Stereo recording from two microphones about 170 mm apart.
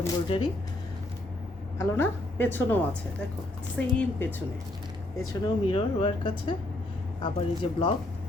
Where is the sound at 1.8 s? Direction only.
15° left (ahead or behind).